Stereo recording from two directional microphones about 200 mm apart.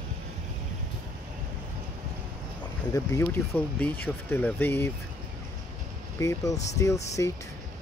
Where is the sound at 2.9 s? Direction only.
15° left (ahead or behind).